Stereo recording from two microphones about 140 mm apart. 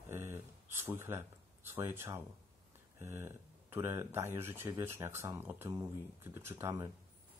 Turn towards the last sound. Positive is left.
turn(degrees=-20)  # may be behind; listen again after turning